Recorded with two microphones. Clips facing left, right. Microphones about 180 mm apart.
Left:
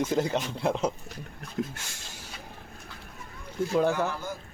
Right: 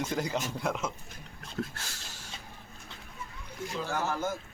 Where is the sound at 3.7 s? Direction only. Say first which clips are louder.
Left 8 dB; 60° left (ahead or behind).